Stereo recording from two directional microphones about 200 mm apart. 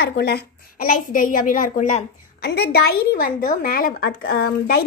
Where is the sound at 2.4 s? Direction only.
55° left (ahead or behind).